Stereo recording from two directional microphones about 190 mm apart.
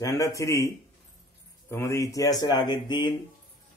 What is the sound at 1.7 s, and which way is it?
A man's voice, 15° left (ahead or behind).